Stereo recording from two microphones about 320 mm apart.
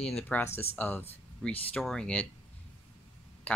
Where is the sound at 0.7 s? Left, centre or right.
Centre.